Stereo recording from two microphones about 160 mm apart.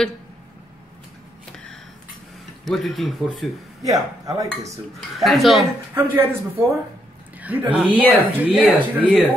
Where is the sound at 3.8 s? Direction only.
20° right (ahead or behind).